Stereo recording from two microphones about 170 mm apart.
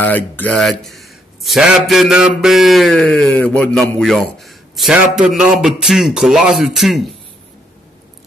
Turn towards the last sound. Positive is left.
turn(degrees=0)  # may be behind; listen again after turning